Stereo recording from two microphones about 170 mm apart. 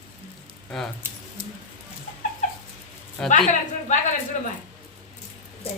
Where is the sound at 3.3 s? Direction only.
45° left (ahead or behind).